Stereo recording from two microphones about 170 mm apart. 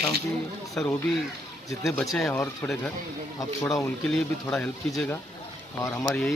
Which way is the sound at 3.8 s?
5° left (ahead or behind).